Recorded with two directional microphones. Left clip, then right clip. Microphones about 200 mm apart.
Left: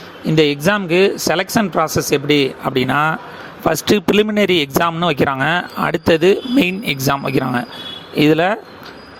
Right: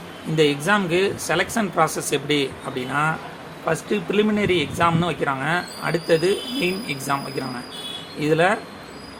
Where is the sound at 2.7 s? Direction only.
50° left (ahead or behind).